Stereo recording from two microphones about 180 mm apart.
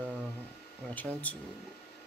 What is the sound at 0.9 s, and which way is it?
Speech, 10° left (ahead or behind).